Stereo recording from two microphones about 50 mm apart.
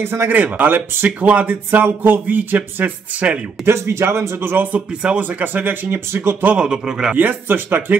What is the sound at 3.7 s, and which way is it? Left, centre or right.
Speech, right.